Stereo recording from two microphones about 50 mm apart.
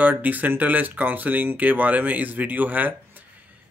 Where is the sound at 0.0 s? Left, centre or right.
Right.